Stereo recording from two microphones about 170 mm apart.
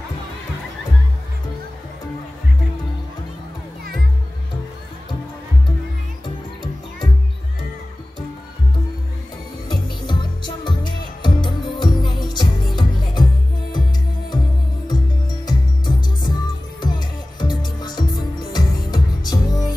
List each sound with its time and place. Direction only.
6.2 s music: 30° left (ahead or behind)
9.7 s music: 25° left (ahead or behind)
15.4 s music: 25° left (ahead or behind)